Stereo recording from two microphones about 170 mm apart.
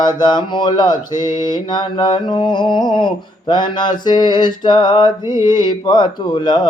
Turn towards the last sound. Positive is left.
turn(degrees=25)  # may be behind; listen again after turning